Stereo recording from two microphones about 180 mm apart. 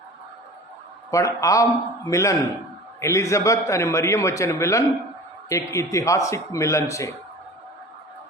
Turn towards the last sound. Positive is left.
turn(degrees=15)  # may be behind; listen again after turning